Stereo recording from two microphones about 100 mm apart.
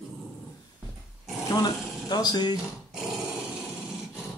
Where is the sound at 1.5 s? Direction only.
45° left (ahead or behind).